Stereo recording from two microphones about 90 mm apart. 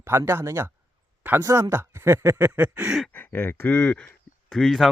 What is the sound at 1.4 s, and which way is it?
Speech, 30° right (ahead or behind).